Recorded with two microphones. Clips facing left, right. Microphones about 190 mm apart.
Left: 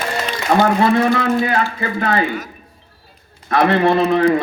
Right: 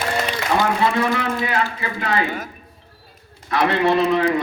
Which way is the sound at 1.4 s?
40° left (ahead or behind).